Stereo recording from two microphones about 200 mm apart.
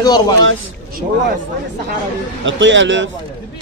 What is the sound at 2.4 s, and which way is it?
Speech, 70° right (ahead or behind).